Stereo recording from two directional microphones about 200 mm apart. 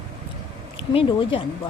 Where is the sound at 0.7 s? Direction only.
25° left (ahead or behind).